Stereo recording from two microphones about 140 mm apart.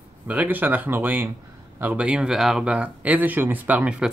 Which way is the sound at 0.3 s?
10° right (ahead or behind).